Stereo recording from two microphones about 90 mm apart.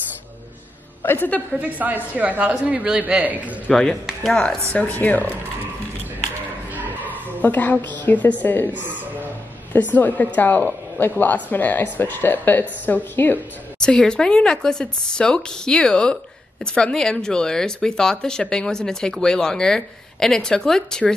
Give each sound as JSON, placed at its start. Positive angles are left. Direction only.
{"t": 1.0, "sound": "speech", "side_deg": 25}
{"t": 1.6, "sound": "speech", "side_deg": -20}
{"t": 3.7, "sound": "speech", "side_deg": 0}
{"t": 4.7, "sound": "speech", "side_deg": 20}
{"t": 7.1, "sound": "a sound", "side_deg": 20}
{"t": 8.0, "sound": "speech", "side_deg": 20}
{"t": 9.9, "sound": "speech", "side_deg": 20}
{"t": 13.7, "sound": "speech", "side_deg": 10}